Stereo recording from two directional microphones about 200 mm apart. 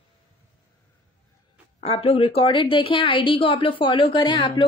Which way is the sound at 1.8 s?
30° left (ahead or behind).